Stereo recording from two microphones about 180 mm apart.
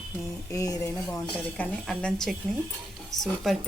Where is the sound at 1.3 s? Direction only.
10° left (ahead or behind).